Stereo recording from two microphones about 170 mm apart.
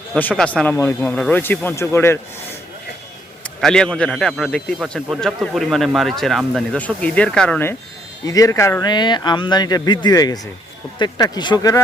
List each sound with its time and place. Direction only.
0.1 s speech: 5° left (ahead or behind)
3.6 s a man's voice: 5° left (ahead or behind); by 11.8 s 20° left (ahead or behind)